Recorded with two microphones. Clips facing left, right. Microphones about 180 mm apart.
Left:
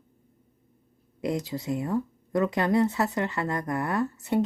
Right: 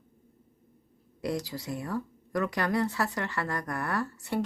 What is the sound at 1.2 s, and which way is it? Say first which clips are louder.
Speech: left 3 dB; 20° left (ahead or behind).